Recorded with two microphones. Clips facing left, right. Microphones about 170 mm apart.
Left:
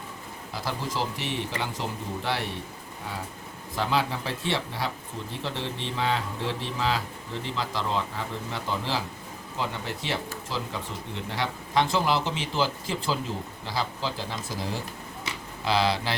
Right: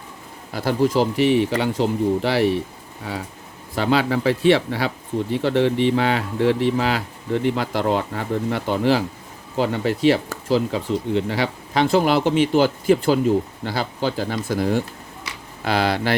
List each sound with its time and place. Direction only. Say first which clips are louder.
0.5 s speech: right 13 dB; 65° right (ahead or behind)
3.8 s speech: right 8 dB; 75° right (ahead or behind); by 16.1 s 55° right (ahead or behind)